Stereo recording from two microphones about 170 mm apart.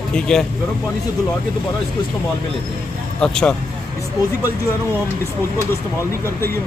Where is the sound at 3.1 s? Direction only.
5° left (ahead or behind).